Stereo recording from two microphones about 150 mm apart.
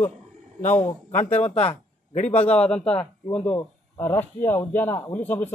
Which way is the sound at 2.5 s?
5° left (ahead or behind).